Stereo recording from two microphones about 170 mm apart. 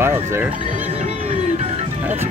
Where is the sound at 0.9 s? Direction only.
40° right (ahead or behind).